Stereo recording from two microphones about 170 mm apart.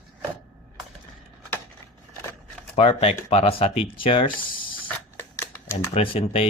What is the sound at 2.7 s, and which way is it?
Speech, 35° left (ahead or behind).